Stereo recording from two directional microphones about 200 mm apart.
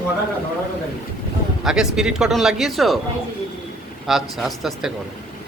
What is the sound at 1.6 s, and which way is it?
Speech, centre (ahead or behind).